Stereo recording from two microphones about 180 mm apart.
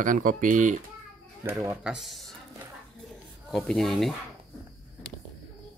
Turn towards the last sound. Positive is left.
turn(degrees=0)  # may be behind; listen again after turning